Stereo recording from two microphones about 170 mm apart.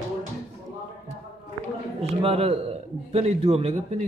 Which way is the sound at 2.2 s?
35° right (ahead or behind).